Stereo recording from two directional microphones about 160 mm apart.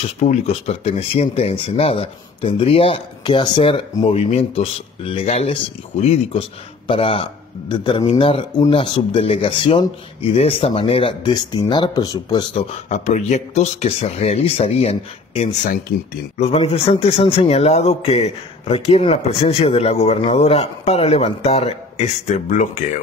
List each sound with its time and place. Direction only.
0.2 s a man's voice: 45° left (ahead or behind); by 12.6 s 25° left (ahead or behind)
12.9 s a man's voice: 45° left (ahead or behind)